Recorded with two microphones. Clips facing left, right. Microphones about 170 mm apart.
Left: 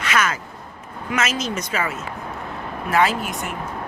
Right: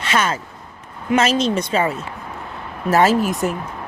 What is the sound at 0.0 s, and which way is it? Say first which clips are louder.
Speech: right 2 dB; 30° right (ahead or behind).